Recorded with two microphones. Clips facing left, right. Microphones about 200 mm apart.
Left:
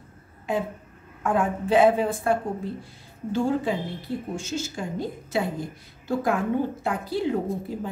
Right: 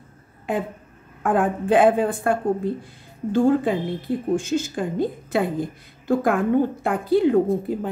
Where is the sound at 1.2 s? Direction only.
55° right (ahead or behind).